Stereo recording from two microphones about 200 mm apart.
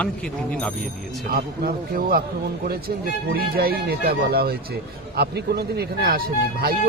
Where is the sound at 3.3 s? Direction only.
50° right (ahead or behind).